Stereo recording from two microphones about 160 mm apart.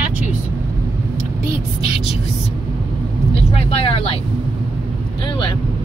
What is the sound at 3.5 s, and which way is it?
Speech, 40° left (ahead or behind).